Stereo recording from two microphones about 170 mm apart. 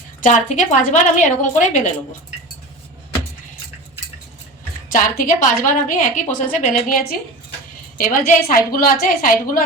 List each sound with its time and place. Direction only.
0.2 s a woman's voice: 45° left (ahead or behind)
4.9 s a woman's voice: 55° left (ahead or behind)